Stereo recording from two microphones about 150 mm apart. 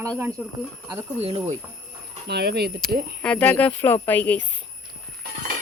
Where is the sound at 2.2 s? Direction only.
90° right.